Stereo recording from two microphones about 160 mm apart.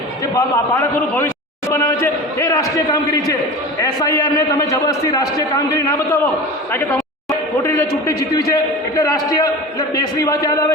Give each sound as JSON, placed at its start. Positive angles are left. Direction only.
{"t": 0.3, "sound": "a man's voice", "side_deg": 15}
{"t": 7.6, "sound": "a man's voice", "side_deg": 20}